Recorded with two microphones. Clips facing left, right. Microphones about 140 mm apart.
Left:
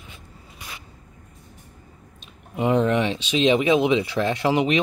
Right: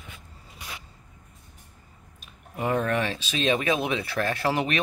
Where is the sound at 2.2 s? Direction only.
20° left (ahead or behind).